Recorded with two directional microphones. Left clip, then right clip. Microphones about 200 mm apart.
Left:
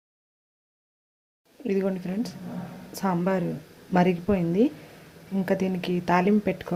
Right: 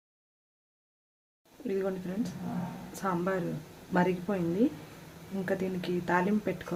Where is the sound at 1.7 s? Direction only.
30° left (ahead or behind).